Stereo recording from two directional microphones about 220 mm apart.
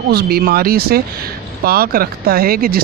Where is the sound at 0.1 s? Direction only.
45° right (ahead or behind).